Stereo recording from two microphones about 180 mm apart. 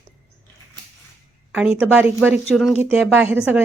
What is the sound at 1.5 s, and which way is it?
Speech, 5° right (ahead or behind).